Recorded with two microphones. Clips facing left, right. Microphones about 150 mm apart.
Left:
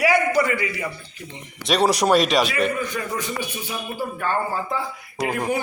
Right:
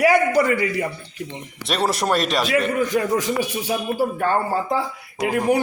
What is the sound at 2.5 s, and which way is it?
A man's voice, 90° right.